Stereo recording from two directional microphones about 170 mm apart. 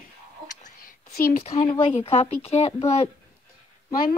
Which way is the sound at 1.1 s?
60° left (ahead or behind).